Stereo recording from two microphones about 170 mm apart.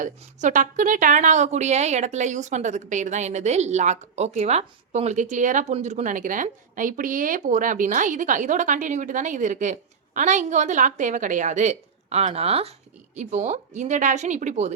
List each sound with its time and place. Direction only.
0.0 s a woman's voice: 45° right (ahead or behind)